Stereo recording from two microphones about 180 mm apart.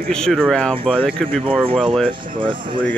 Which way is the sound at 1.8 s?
Centre (ahead or behind).